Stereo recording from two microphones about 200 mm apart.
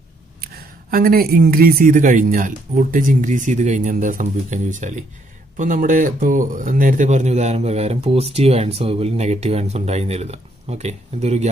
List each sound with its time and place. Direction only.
0.4 s speech: 45° right (ahead or behind)